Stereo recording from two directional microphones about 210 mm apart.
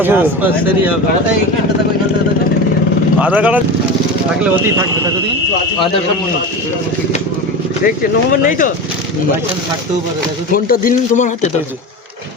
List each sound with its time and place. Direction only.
0.0 s speech: 10° right (ahead or behind)
3.2 s speech: 5° right (ahead or behind)
7.9 s speech: 40° left (ahead or behind)
10.5 s speech: 40° left (ahead or behind)